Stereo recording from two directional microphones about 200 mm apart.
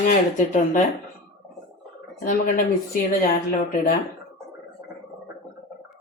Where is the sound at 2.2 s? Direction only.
40° left (ahead or behind).